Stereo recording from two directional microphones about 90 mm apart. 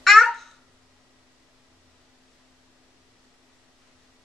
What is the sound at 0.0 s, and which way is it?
Babbling, centre (ahead or behind).